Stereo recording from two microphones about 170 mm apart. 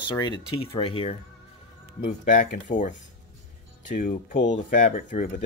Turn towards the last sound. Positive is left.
turn(degrees=50)  # may be behind; listen again after turning